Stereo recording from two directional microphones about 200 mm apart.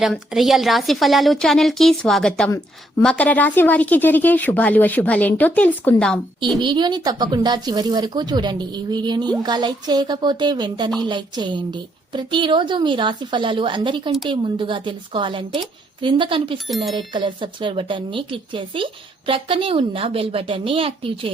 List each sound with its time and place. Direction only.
0.0 s a woman's voice: centre (ahead or behind)
6.6 s a woman's voice: 20° right (ahead or behind)
16.6 s a woman's voice: centre (ahead or behind)
17.2 s a woman's voice: 25° right (ahead or behind)